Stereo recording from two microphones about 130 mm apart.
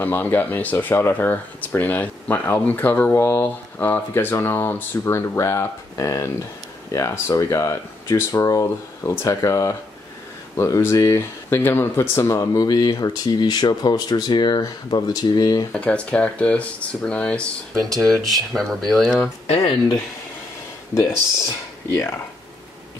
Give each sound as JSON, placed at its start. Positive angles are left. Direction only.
{"t": 0.0, "sound": "speech", "side_deg": 15}
{"t": 15.7, "sound": "speech", "side_deg": 10}